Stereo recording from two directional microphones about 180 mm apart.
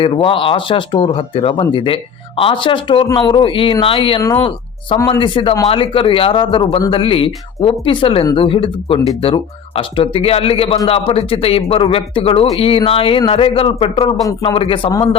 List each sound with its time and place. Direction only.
0.0 s speech: 30° left (ahead or behind)